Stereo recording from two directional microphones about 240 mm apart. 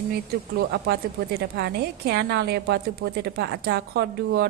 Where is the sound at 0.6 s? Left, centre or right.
Right.